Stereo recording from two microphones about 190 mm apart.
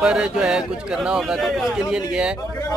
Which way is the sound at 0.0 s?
5° right (ahead or behind).